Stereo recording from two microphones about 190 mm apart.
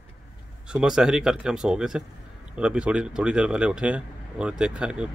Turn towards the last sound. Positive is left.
turn(degrees=-5)  # may be behind; listen again after turning